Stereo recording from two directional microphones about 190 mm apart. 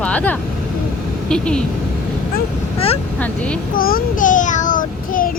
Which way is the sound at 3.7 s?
50° left (ahead or behind).